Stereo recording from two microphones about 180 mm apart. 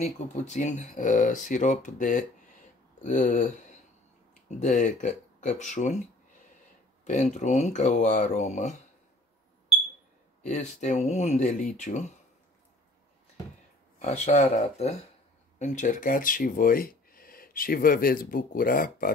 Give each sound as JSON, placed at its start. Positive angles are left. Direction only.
{"t": 0.0, "sound": "speech", "side_deg": 40}
{"t": 7.1, "sound": "speech", "side_deg": 40}
{"t": 10.4, "sound": "speech", "side_deg": 40}
{"t": 13.9, "sound": "speech", "side_deg": 40}